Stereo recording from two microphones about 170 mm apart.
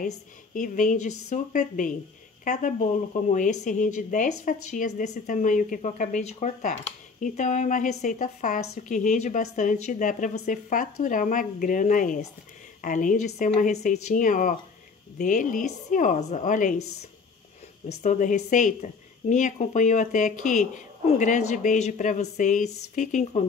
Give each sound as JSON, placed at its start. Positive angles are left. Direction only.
{"t": 0.6, "sound": "speech", "side_deg": 50}
{"t": 18.0, "sound": "speech", "side_deg": 45}